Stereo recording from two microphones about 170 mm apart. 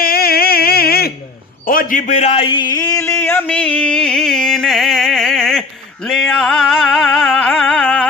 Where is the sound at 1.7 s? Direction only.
55° left (ahead or behind); by 5.6 s centre (ahead or behind).